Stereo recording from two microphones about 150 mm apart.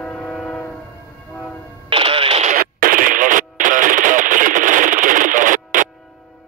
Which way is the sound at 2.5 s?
70° right (ahead or behind).